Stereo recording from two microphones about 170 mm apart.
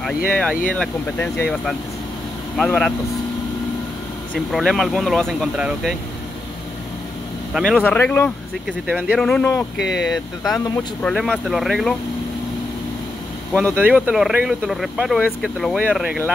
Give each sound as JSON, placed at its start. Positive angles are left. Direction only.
{"t": 0.0, "sound": "speech", "side_deg": 0}
{"t": 4.5, "sound": "speech", "side_deg": 0}
{"t": 7.5, "sound": "speech", "side_deg": 0}
{"t": 8.6, "sound": "speech", "side_deg": -5}
{"t": 9.2, "sound": "speech", "side_deg": 5}
{"t": 10.6, "sound": "speech", "side_deg": 20}
{"t": 11.0, "sound": "speech", "side_deg": 5}
{"t": 13.5, "sound": "speech", "side_deg": 5}
{"t": 13.7, "sound": "speech", "side_deg": -10}